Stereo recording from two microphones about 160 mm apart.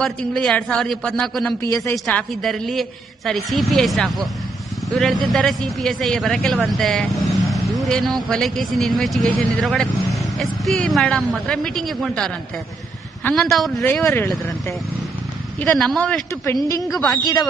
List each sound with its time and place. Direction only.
0.0 s speech: centre (ahead or behind)
13.8 s speech: 10° left (ahead or behind)
15.6 s speech: 5° left (ahead or behind)
17.1 s speech: 25° left (ahead or behind)